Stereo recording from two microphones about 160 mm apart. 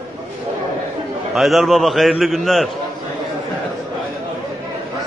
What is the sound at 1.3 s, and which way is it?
A man's voice, centre (ahead or behind).